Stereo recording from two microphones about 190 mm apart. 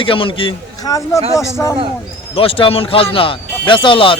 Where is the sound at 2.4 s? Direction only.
30° left (ahead or behind).